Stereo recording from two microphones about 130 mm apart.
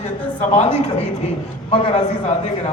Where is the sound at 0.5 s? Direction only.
55° left (ahead or behind).